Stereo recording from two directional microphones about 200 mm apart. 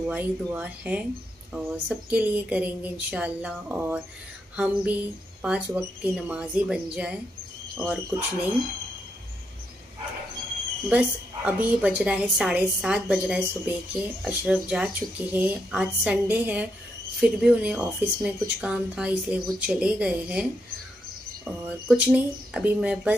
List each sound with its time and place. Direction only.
0.0 s a woman's voice: 10° right (ahead or behind)
10.9 s a woman's voice: 5° right (ahead or behind)
21.6 s a woman's voice: 10° right (ahead or behind)